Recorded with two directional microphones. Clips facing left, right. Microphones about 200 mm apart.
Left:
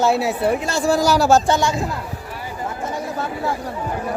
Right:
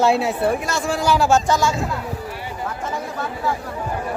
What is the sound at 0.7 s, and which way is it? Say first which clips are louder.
Speech: left 3 dB; 35° left (ahead or behind).